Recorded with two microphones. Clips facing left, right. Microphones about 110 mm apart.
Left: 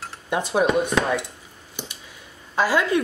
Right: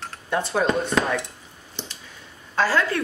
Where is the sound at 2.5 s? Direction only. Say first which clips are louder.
Left 1 dB; 15° left (ahead or behind).